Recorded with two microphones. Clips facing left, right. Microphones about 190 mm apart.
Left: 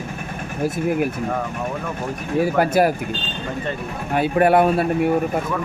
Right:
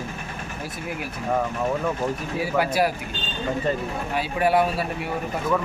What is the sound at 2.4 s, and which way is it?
Speech, 50° left (ahead or behind).